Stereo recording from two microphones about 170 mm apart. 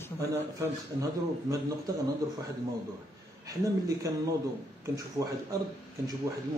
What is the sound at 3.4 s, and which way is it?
Speech, 20° right (ahead or behind).